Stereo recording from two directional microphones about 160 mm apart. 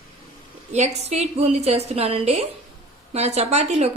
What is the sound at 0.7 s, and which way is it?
A woman's voice, 45° right (ahead or behind).